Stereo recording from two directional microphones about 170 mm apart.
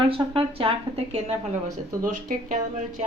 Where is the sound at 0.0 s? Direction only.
30° right (ahead or behind).